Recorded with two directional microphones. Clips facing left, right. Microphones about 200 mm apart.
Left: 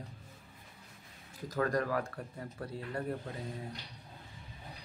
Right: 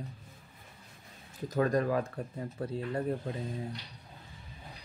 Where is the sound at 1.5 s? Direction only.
20° right (ahead or behind).